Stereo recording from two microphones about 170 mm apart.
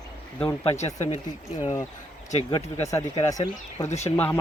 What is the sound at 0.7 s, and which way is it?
Speech, 40° left (ahead or behind).